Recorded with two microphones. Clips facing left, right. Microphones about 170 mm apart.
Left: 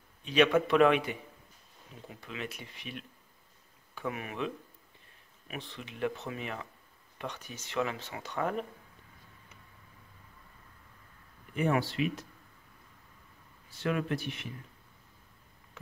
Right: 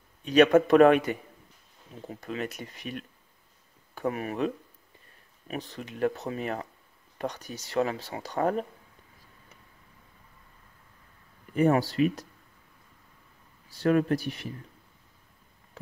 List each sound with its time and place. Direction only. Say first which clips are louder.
0.2 s speech: right 6 dB; 45° right (ahead or behind)
5.5 s speech: right 6 dB; 40° right (ahead or behind)
11.5 s speech: right 6 dB; 40° right (ahead or behind)
13.7 s speech: right 8 dB; 40° right (ahead or behind)